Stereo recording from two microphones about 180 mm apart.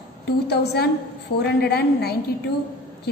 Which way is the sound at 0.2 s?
65° left (ahead or behind).